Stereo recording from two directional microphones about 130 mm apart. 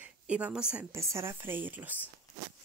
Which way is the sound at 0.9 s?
20° right (ahead or behind).